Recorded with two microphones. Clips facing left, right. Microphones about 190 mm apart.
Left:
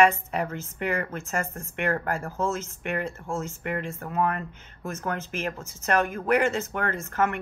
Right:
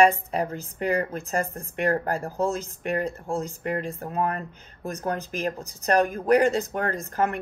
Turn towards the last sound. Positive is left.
turn(degrees=-35)  # may be behind; listen again after turning